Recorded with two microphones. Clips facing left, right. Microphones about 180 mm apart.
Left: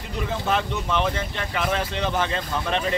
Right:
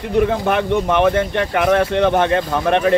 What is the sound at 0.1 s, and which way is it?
Speech, 60° right (ahead or behind).